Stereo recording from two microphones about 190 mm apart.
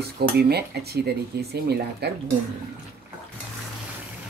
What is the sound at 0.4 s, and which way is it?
Speech, 55° right (ahead or behind).